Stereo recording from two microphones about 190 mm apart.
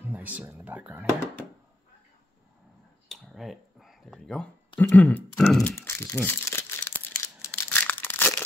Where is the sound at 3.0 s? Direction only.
Centre (ahead or behind).